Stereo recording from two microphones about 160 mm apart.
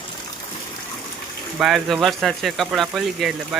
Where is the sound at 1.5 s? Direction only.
Centre (ahead or behind).